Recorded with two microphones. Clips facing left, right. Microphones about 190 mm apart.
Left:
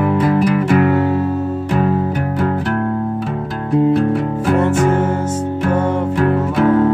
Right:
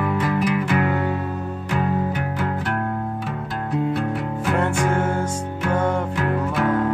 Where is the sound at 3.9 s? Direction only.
40° left (ahead or behind).